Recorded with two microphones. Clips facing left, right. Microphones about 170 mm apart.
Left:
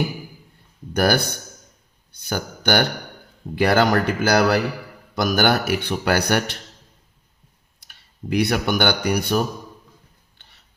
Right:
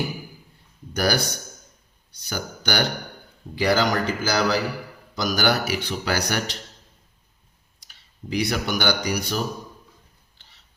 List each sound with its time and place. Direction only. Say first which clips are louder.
0.9 s a man's voice: left 4 dB; 55° left (ahead or behind)
7.8 s speech: left 5 dB; 60° left (ahead or behind)